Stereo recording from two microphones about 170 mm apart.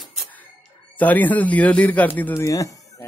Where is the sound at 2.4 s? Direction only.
20° left (ahead or behind).